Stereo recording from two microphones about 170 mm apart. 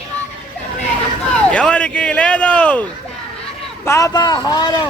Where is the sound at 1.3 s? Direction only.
5° left (ahead or behind).